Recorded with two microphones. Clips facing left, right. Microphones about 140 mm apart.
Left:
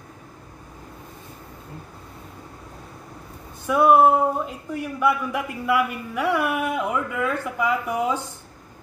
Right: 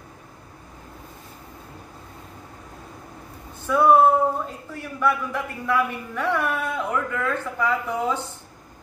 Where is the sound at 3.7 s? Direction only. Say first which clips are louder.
Left 1 dB; 15° left (ahead or behind).